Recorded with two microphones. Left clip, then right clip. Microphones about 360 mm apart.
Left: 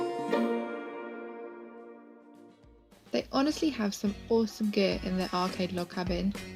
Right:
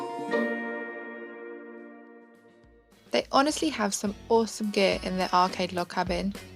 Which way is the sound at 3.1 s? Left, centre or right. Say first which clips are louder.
Right 6 dB; right.